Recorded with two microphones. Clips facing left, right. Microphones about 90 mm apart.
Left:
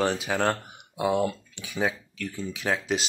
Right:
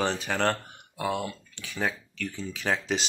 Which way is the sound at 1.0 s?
20° left (ahead or behind).